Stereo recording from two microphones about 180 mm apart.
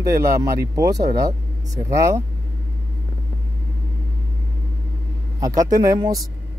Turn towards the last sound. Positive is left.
turn(degrees=-20)  # may be behind; listen again after turning